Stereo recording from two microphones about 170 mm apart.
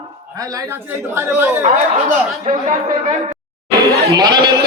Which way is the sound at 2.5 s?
45° right (ahead or behind).